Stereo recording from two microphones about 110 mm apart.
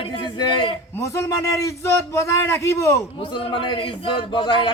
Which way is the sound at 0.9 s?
30° left (ahead or behind).